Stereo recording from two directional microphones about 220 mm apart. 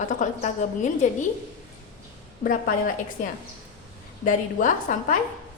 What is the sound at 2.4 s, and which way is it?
A woman's voice, 40° left (ahead or behind).